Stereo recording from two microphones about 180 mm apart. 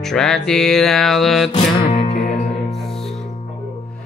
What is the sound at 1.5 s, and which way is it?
Music, 35° left (ahead or behind).